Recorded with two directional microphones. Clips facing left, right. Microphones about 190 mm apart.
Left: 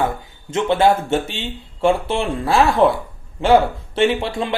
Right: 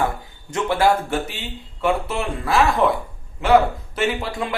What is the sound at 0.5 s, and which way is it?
A man's voice, 25° left (ahead or behind).